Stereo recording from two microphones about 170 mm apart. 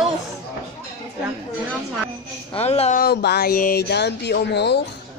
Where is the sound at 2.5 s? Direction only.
35° left (ahead or behind).